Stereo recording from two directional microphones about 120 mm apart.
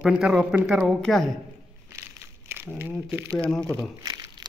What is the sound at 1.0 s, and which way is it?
Speech, centre (ahead or behind).